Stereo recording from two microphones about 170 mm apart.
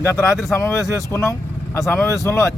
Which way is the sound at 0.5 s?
15° left (ahead or behind).